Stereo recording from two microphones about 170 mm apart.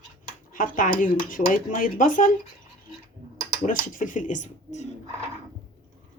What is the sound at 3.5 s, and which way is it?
Speech, 50° left (ahead or behind).